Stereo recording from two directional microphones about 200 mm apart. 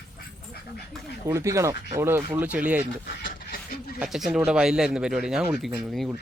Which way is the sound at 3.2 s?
50° left (ahead or behind).